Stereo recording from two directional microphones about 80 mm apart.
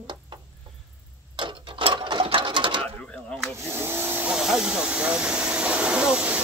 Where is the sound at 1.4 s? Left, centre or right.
Right.